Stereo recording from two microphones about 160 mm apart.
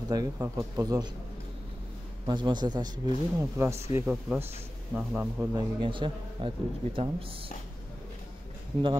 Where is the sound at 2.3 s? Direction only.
30° right (ahead or behind).